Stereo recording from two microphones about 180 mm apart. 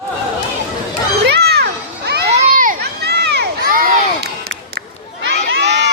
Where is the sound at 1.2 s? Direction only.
65° right (ahead or behind).